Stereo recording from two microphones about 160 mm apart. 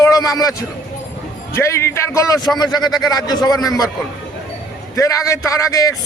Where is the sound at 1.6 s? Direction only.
15° left (ahead or behind).